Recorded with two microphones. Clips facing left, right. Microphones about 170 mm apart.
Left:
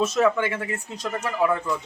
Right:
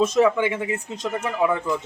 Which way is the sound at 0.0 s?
15° right (ahead or behind).